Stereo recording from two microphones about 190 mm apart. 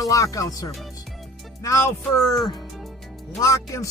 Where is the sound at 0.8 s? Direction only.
Centre (ahead or behind).